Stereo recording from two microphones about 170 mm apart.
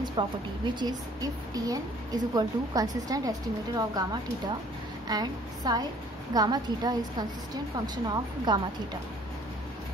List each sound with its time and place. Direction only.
0.0 s a woman's voice: 25° right (ahead or behind)